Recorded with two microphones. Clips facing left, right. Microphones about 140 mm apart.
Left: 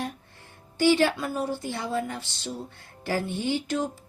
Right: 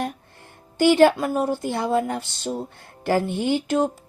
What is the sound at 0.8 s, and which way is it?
A woman's voice, 50° right (ahead or behind).